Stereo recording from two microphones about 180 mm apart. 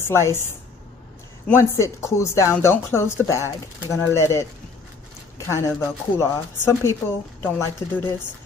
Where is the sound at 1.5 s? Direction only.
15° left (ahead or behind).